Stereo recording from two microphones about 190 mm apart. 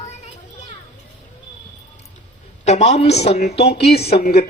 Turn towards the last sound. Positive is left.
turn(degrees=55)  # may be behind; listen again after turning